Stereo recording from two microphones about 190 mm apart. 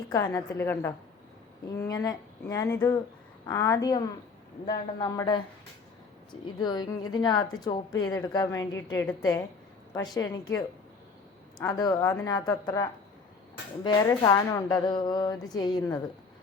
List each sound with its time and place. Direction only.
0.1 s a woman's voice: 15° left (ahead or behind)
6.6 s a woman's voice: 20° left (ahead or behind)